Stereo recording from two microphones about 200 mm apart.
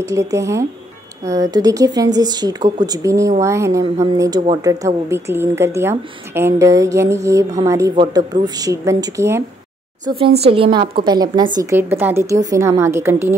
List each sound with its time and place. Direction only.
0.0 s speech: 15° right (ahead or behind)
10.0 s speech: 25° right (ahead or behind)